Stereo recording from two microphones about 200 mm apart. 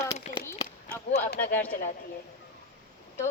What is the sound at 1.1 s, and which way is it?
Speech, 50° left (ahead or behind).